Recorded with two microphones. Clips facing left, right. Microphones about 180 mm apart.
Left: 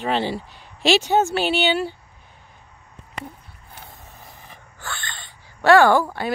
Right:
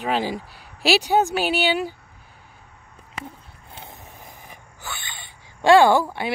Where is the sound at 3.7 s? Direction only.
20° right (ahead or behind).